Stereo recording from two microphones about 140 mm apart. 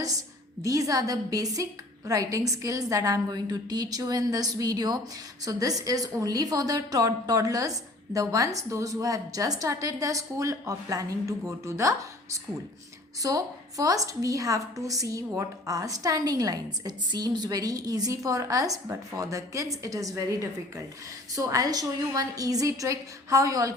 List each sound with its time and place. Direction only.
0.0 s a woman's voice: 25° right (ahead or behind)